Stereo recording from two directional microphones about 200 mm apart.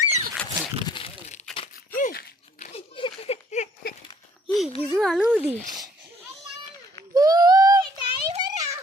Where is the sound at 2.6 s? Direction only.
30° left (ahead or behind).